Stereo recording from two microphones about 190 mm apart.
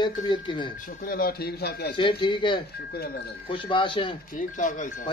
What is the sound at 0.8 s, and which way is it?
Speech, 50° left (ahead or behind).